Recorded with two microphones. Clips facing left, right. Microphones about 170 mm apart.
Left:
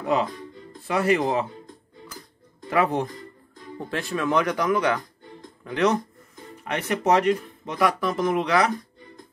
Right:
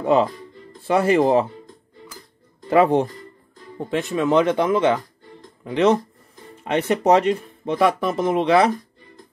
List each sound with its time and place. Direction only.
0.0 s speech: 30° right (ahead or behind)
2.7 s speech: 30° right (ahead or behind)